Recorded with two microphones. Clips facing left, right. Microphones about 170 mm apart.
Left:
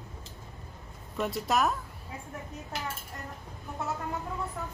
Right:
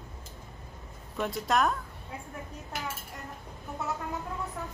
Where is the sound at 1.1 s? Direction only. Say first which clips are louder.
Even; centre (ahead or behind).